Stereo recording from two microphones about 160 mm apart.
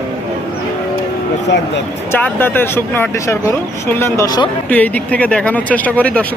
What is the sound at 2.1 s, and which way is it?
Speech, 15° left (ahead or behind).